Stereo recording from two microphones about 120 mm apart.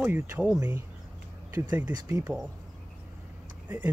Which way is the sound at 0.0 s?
10° right (ahead or behind).